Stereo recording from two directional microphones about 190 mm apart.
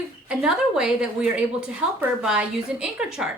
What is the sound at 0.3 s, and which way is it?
A woman's voice, 5° right (ahead or behind).